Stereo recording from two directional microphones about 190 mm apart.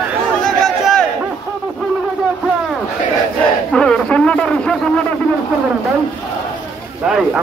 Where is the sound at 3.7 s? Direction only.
5° left (ahead or behind).